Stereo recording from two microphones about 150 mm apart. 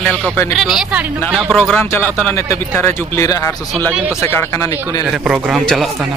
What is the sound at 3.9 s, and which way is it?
Speech, 5° right (ahead or behind).